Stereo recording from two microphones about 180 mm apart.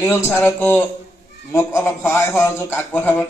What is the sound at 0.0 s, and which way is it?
A man's voice, 10° left (ahead or behind).